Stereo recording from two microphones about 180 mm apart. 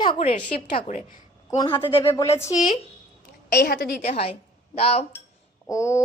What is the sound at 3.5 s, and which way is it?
Speech, 55° left (ahead or behind).